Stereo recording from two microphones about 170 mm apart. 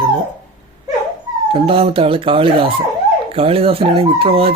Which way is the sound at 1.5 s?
30° right (ahead or behind).